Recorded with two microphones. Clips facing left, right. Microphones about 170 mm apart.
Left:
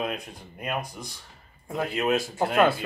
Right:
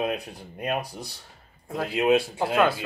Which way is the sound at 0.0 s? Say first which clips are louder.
Right 3 dB; 30° right (ahead or behind).